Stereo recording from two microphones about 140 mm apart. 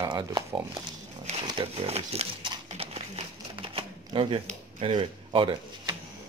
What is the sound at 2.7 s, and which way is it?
Typewriter, 45° right (ahead or behind).